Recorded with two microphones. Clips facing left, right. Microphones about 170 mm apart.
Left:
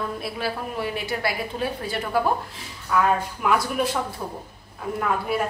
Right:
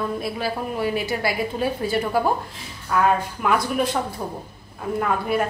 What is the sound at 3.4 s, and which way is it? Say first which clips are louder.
Speech: right 1 dB; 5° left (ahead or behind).